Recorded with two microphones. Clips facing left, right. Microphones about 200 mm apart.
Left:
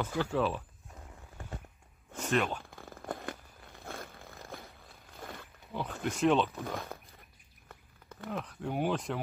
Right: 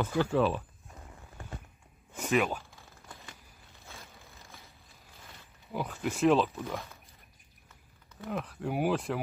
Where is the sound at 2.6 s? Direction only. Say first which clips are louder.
Left 12 dB; 55° left (ahead or behind).